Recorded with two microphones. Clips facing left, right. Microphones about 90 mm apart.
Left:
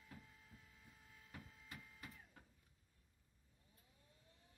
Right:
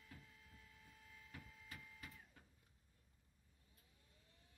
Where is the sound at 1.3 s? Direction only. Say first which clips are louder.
Left 1 dB; 20° left (ahead or behind).